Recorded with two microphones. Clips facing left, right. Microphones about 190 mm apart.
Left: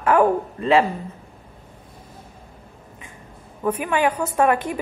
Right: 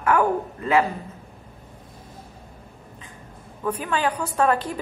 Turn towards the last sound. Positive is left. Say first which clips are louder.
# left 2 dB
turn(degrees=15)  # may be behind; listen again after turning